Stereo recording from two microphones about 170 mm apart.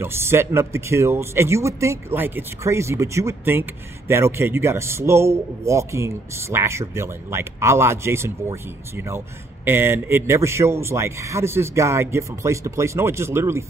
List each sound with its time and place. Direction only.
0.0 s a man's voice: 15° right (ahead or behind)